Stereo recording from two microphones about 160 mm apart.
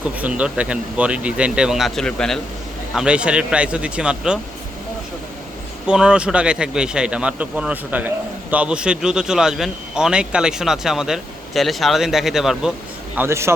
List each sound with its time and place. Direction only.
0.2 s speech: 10° right (ahead or behind)
5.8 s speech: 5° right (ahead or behind)
13.1 s speech: 15° right (ahead or behind)